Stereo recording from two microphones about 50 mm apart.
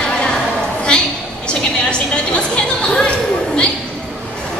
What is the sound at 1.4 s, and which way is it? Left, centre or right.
Music, left.